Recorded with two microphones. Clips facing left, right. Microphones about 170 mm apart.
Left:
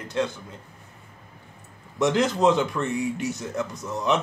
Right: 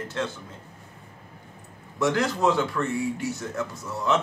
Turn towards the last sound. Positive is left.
turn(degrees=20)  # may be behind; listen again after turning